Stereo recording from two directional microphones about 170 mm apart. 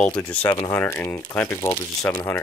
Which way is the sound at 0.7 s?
15° left (ahead or behind).